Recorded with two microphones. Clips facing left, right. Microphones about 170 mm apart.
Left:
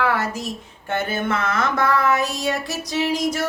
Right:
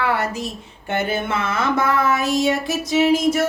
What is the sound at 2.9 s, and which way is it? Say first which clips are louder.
Child singing: right 6 dB; 20° right (ahead or behind).